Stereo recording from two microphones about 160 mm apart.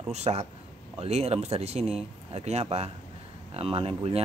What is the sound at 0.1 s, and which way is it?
A man's voice, 40° right (ahead or behind).